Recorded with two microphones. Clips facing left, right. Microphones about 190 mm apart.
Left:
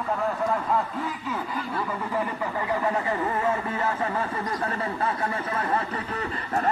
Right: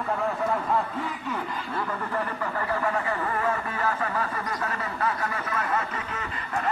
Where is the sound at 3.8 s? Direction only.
25° left (ahead or behind).